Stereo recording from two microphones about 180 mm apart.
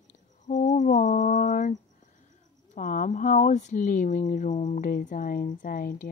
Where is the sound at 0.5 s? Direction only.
45° left (ahead or behind).